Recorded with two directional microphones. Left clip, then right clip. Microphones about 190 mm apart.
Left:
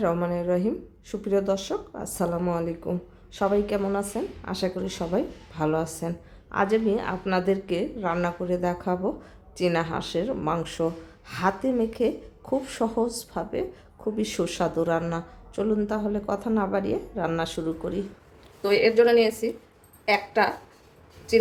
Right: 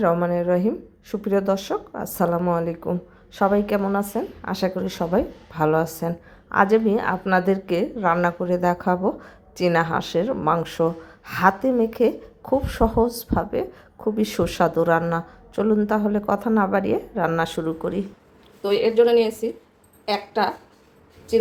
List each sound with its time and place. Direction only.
0.0 s speech: 10° right (ahead or behind)
18.6 s speech: 5° left (ahead or behind)